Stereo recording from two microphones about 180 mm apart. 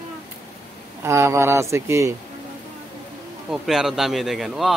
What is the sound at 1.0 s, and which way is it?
Speech, 15° right (ahead or behind).